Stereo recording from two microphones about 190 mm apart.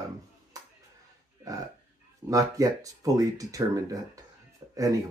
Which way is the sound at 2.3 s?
15° right (ahead or behind).